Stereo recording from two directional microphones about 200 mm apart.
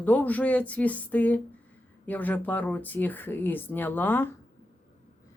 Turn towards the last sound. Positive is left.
turn(degrees=10)  # may be behind; listen again after turning